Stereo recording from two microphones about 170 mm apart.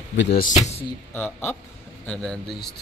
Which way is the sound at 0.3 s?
55° left (ahead or behind).